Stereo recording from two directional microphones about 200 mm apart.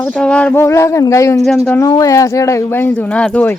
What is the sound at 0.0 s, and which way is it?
Speech, 5° left (ahead or behind).